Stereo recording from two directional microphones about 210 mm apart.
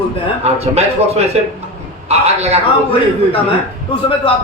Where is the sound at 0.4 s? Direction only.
30° right (ahead or behind).